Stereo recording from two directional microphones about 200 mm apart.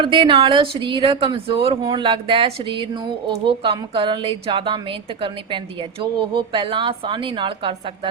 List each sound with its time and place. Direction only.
0.0 s a woman's voice: 25° right (ahead or behind)